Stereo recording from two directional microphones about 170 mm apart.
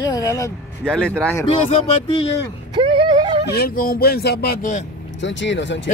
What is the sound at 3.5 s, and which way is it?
Speech, 60° left (ahead or behind).